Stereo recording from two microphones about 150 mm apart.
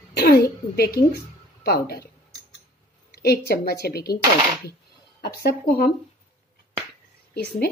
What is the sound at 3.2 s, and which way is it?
Speech, 90° left.